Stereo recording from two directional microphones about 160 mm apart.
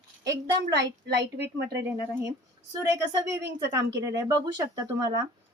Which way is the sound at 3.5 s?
20° right (ahead or behind).